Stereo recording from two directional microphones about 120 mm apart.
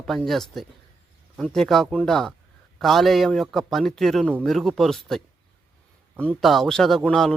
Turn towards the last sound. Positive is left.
turn(degrees=5)  # may be behind; listen again after turning